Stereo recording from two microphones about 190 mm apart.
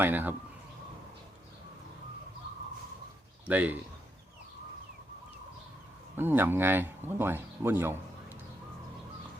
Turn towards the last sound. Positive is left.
turn(degrees=-10)  # may be behind; listen again after turning